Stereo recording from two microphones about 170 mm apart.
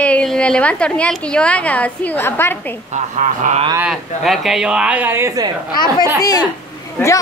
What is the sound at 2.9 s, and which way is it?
Speech, 50° right (ahead or behind).